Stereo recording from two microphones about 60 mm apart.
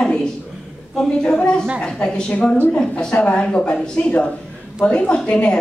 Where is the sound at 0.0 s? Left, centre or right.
Centre.